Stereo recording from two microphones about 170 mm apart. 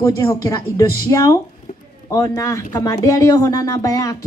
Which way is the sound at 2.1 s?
20° left (ahead or behind).